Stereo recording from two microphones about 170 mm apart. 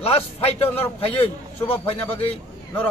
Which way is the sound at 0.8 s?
35° left (ahead or behind).